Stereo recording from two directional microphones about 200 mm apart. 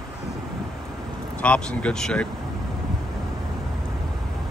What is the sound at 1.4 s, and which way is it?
Speech, 5° left (ahead or behind).